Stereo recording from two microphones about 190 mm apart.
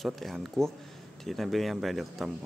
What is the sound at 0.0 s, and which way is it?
Speech, centre (ahead or behind).